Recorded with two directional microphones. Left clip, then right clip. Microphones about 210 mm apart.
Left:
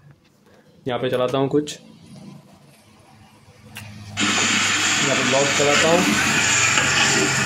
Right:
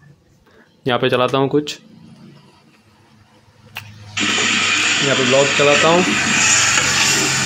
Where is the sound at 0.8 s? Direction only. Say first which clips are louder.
Right 6 dB; 20° right (ahead or behind).